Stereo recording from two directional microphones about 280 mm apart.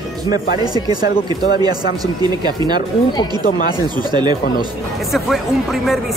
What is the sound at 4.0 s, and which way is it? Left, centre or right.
Speech, centre.